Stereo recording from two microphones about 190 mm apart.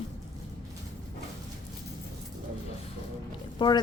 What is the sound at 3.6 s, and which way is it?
Speech, 25° left (ahead or behind).